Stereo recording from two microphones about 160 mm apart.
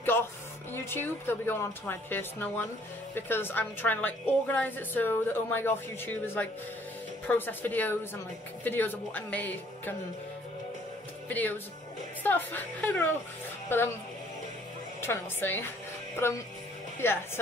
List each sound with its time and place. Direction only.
0.0 s music: 15° left (ahead or behind)
0.7 s a woman's voice: 15° left (ahead or behind)
11.2 s a woman's voice: 10° left (ahead or behind)
15.0 s a woman's voice: 15° left (ahead or behind)